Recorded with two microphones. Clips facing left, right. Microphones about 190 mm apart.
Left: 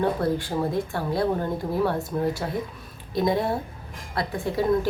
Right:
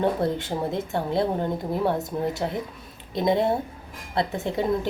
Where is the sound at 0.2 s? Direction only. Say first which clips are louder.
Left 1 dB; 20° right (ahead or behind).